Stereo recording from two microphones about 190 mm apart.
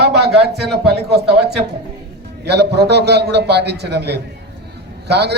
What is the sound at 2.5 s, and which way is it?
A man's voice, 60° right (ahead or behind).